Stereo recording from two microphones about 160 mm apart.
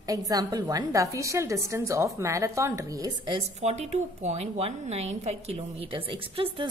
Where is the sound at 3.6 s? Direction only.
45° right (ahead or behind).